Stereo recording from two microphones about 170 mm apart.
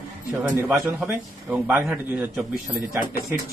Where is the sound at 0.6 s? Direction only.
15° right (ahead or behind).